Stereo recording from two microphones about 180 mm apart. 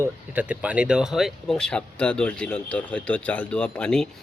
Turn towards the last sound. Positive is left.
turn(degrees=5)  # may be behind; listen again after turning